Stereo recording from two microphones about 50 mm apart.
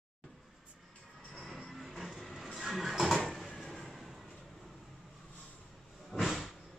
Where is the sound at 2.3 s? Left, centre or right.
Centre.